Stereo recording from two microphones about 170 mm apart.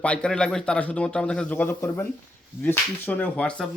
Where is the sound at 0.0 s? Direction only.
5° left (ahead or behind).